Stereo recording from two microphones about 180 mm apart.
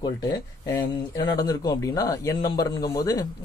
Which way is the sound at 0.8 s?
20° left (ahead or behind).